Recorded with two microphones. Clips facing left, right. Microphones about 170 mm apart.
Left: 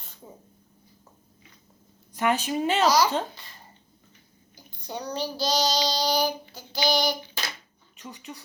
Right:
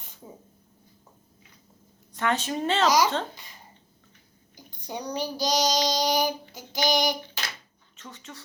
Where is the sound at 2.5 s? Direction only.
10° left (ahead or behind).